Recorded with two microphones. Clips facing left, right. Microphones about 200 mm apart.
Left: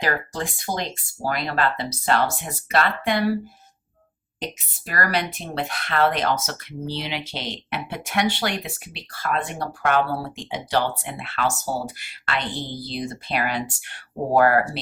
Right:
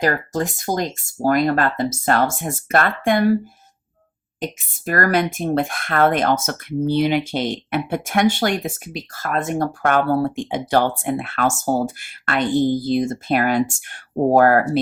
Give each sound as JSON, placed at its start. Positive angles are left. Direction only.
{"t": 0.0, "sound": "speech", "side_deg": -45}
{"t": 4.9, "sound": "speech", "side_deg": -50}